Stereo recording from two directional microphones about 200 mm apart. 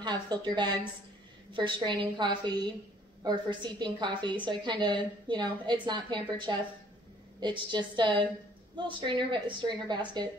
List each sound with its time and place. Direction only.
0.0 s a woman's voice: 20° right (ahead or behind)